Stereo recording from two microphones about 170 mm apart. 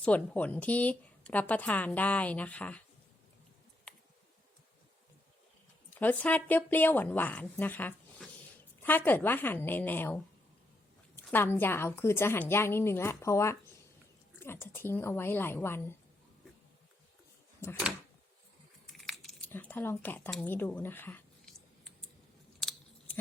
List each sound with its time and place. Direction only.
0.0 s speech: 10° left (ahead or behind)
5.9 s speech: 10° left (ahead or behind)
11.2 s speech: 15° left (ahead or behind)
17.6 s speech: 15° left (ahead or behind)
18.9 s a sound: centre (ahead or behind)
19.5 s speech: 10° left (ahead or behind)